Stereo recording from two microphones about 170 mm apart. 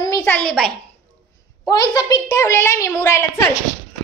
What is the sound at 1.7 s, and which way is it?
A woman's voice, 20° left (ahead or behind).